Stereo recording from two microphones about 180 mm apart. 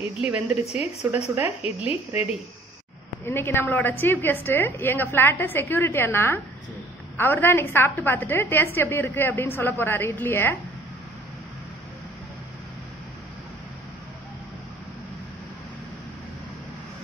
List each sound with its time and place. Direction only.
0.7 s speech: 5° right (ahead or behind)
3.3 s a woman's voice: 15° left (ahead or behind)